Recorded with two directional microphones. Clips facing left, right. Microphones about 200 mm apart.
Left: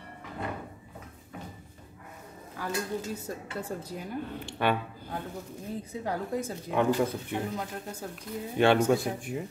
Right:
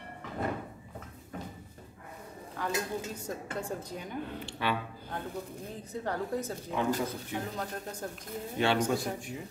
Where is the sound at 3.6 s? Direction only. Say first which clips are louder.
Left 1 dB; 5° left (ahead or behind).